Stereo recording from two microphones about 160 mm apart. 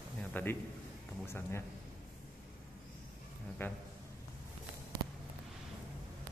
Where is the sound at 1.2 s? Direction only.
15° left (ahead or behind).